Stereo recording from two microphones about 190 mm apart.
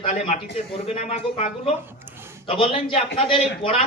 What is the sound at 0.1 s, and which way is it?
A man's voice, 35° left (ahead or behind).